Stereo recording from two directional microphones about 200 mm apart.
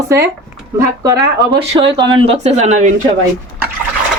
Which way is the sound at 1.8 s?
25° right (ahead or behind).